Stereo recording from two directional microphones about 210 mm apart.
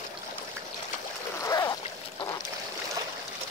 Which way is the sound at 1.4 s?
15° left (ahead or behind).